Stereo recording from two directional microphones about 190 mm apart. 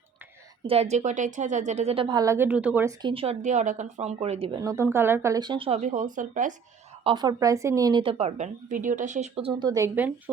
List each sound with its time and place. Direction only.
0.7 s a woman's voice: 35° right (ahead or behind); by 2.9 s 10° right (ahead or behind)
3.0 s a woman's voice: 30° right (ahead or behind)
4.6 s speech: 15° right (ahead or behind); by 6.5 s 40° right (ahead or behind)
7.0 s speech: 25° right (ahead or behind)
8.2 s a woman's voice: 40° right (ahead or behind); by 10.3 s 10° right (ahead or behind)